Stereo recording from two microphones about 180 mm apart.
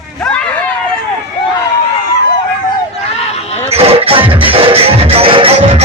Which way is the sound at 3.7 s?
35° right (ahead or behind).